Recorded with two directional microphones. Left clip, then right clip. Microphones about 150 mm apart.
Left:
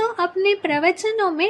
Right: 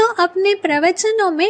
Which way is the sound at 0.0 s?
35° right (ahead or behind).